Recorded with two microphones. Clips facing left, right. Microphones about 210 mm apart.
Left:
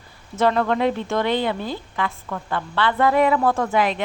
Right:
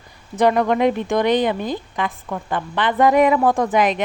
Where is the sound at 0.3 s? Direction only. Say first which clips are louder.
Right 3 dB; 15° right (ahead or behind).